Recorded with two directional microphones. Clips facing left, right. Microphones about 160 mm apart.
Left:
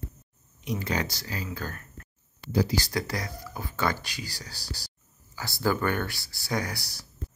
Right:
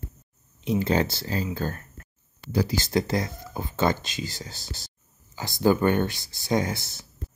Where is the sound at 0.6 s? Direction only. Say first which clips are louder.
Right 7 dB; 25° right (ahead or behind).